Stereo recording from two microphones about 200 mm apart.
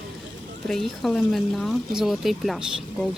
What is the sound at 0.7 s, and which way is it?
Speech, centre (ahead or behind).